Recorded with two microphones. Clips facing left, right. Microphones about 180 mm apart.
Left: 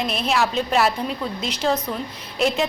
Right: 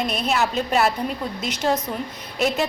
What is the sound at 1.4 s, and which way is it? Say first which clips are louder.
Speech: even; 45° right (ahead or behind).